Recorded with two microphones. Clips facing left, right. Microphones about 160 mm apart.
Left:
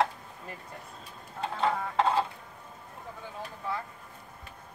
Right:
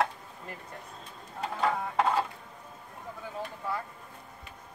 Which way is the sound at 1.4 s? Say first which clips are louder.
Even; 25° left (ahead or behind).